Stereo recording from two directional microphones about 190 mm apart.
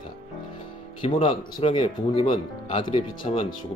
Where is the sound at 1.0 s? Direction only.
30° left (ahead or behind).